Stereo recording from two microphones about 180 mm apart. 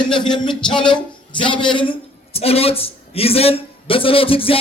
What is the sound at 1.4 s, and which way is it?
A man's voice, 30° left (ahead or behind).